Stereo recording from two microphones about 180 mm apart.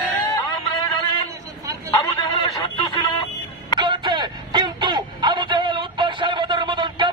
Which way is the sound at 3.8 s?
25° right (ahead or behind).